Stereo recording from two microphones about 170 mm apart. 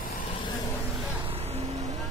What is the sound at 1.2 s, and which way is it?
Vehicle, 35° right (ahead or behind).